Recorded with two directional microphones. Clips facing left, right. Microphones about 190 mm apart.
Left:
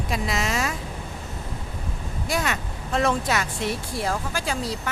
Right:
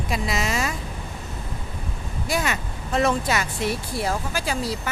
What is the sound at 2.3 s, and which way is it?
Speech, centre (ahead or behind).